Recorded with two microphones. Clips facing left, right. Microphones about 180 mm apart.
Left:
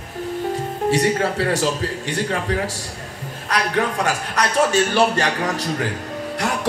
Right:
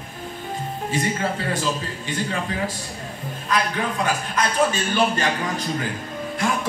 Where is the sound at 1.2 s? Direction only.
80° left.